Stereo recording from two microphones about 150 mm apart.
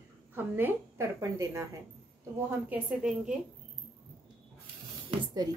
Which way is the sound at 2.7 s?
5° right (ahead or behind).